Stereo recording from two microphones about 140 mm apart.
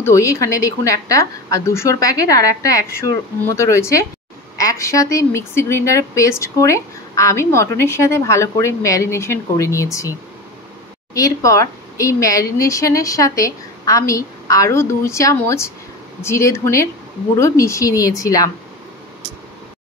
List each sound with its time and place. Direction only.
0.0 s speech: 20° left (ahead or behind)
11.1 s speech: 25° left (ahead or behind)